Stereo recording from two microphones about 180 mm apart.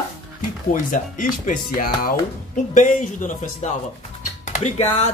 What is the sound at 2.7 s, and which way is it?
Speech, 45° left (ahead or behind).